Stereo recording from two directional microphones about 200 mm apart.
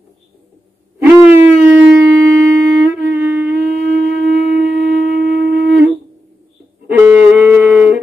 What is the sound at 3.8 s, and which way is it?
Wind instrument, 40° left (ahead or behind).